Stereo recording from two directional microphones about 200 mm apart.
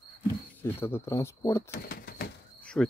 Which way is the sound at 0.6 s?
10° left (ahead or behind).